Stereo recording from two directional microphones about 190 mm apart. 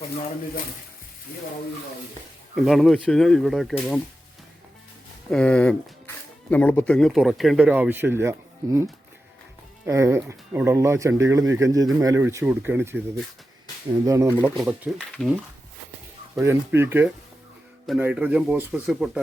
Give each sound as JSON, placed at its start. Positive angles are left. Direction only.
{"t": 2.6, "sound": "speech", "side_deg": 0}
{"t": 5.3, "sound": "speech", "side_deg": 5}
{"t": 14.0, "sound": "speech", "side_deg": -15}
{"t": 14.7, "sound": "speech", "side_deg": 0}
{"t": 16.3, "sound": "speech", "side_deg": -15}